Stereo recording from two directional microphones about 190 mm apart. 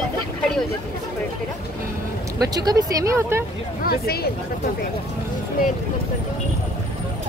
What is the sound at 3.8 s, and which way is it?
Speech, 55° left (ahead or behind).